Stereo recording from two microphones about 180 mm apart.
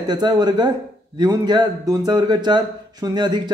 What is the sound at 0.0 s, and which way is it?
Speech, 25° right (ahead or behind).